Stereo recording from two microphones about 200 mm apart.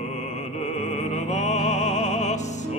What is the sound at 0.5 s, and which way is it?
Music, 35° left (ahead or behind).